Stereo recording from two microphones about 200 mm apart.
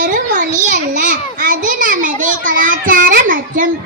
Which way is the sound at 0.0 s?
40° right (ahead or behind).